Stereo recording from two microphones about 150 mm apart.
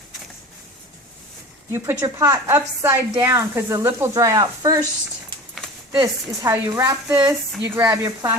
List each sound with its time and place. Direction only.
1.7 s speech: 20° right (ahead or behind)
5.9 s speech: 25° right (ahead or behind)